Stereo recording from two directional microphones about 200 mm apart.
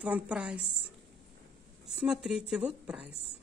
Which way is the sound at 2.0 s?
5° right (ahead or behind).